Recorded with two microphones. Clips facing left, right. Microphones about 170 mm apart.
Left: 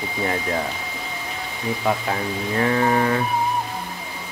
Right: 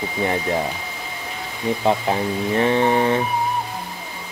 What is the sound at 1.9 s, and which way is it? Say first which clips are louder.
Speech: right 3 dB; 25° right (ahead or behind).